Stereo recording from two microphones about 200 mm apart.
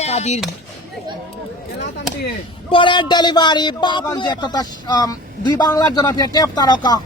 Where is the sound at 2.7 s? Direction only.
25° left (ahead or behind).